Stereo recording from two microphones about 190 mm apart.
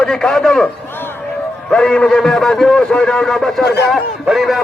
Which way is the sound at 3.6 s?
60° left (ahead or behind).